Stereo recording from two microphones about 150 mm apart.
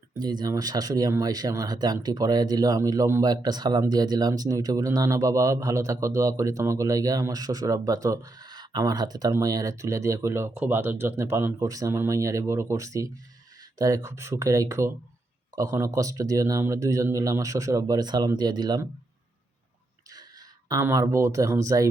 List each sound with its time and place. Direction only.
0.2 s speech: 30° right (ahead or behind)
20.8 s speech: 20° right (ahead or behind)